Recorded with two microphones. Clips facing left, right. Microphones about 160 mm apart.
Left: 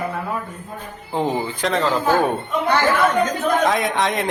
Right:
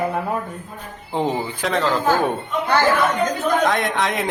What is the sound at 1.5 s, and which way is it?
Speech, centre (ahead or behind).